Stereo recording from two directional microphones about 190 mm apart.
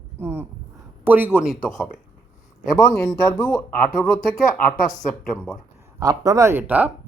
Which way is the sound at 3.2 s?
20° left (ahead or behind).